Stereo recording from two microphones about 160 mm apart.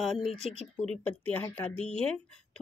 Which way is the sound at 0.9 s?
10° left (ahead or behind).